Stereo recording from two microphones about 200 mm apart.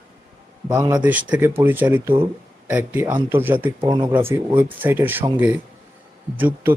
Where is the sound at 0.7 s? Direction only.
20° right (ahead or behind).